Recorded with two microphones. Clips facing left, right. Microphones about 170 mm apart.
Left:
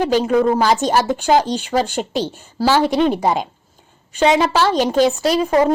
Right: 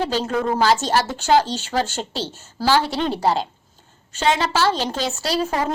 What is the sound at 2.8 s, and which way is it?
Speech, 45° left (ahead or behind).